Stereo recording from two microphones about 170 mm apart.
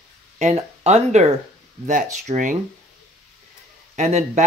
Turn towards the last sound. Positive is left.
turn(degrees=-40)  # may be behind; listen again after turning